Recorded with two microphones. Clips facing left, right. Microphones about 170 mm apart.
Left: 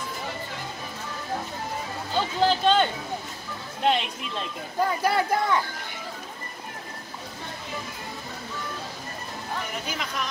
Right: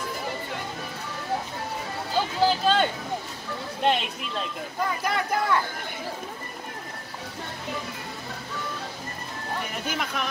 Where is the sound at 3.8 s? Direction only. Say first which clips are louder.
Left 1 dB; centre (ahead or behind).